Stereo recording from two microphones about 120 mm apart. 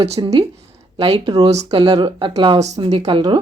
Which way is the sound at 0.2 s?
35° right (ahead or behind).